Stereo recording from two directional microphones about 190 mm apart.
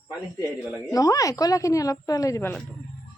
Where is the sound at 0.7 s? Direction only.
20° left (ahead or behind).